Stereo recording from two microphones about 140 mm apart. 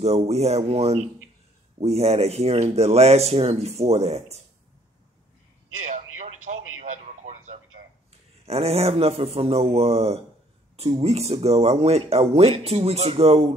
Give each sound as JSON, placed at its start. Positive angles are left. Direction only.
{"t": 0.3, "sound": "speech", "side_deg": -50}
{"t": 5.9, "sound": "a sound", "side_deg": -65}
{"t": 8.5, "sound": "speech", "side_deg": -50}